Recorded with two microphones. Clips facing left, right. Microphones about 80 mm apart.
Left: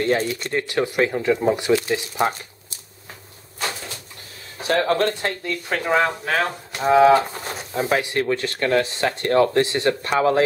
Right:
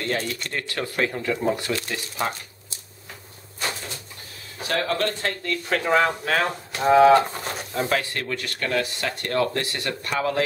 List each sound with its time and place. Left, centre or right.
0.0 s speech: left
4.6 s speech: left; by 7.9 s centre
7.9 s speech: centre